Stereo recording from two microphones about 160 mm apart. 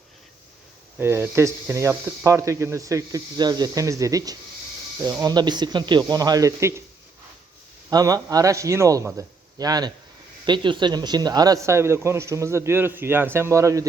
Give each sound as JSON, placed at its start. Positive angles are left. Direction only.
{"t": 0.9, "sound": "speech", "side_deg": -15}
{"t": 7.9, "sound": "a man's voice", "side_deg": -25}